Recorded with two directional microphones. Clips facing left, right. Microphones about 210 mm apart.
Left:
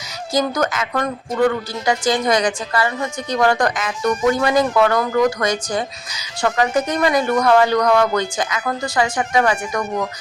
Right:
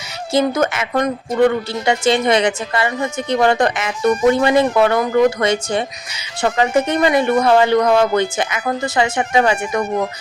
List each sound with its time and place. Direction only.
0.3 s speech: 25° right (ahead or behind)